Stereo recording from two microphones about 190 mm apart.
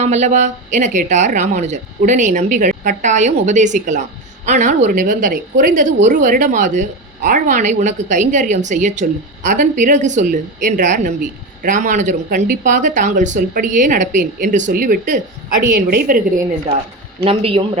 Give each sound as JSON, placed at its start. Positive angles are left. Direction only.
{"t": 0.0, "sound": "a woman's voice", "side_deg": -35}
{"t": 17.2, "sound": "a man's voice", "side_deg": -30}